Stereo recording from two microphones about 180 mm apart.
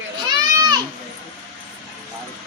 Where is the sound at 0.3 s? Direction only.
20° right (ahead or behind).